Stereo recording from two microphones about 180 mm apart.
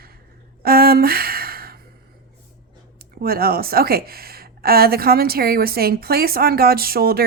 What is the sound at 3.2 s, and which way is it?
A woman's voice, 55° right (ahead or behind).